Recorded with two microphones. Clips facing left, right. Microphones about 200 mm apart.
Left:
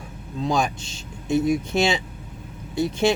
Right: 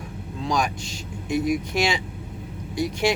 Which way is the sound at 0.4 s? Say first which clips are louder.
Left 2 dB; 25° left (ahead or behind).